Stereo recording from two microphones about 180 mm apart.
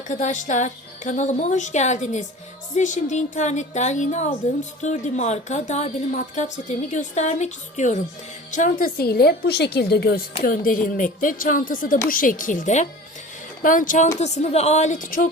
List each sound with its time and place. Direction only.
0.1 s a woman's voice: 45° left (ahead or behind); by 10.2 s 60° left (ahead or behind)
10.4 s a woman's voice: 50° left (ahead or behind)